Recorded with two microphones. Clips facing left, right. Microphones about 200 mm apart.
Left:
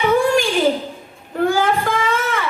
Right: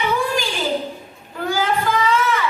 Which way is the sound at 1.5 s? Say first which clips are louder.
Right 1 dB; 55° left (ahead or behind).